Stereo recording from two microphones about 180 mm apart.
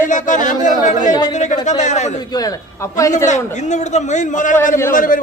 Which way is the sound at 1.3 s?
40° left (ahead or behind).